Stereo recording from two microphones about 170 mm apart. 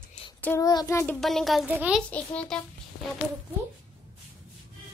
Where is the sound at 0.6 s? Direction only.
20° left (ahead or behind).